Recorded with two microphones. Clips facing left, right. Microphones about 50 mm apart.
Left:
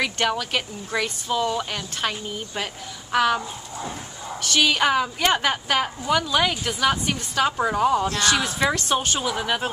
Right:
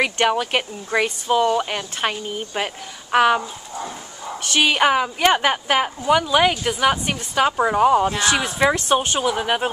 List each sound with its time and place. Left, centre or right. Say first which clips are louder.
0.0 s a woman's voice: right 5 dB; right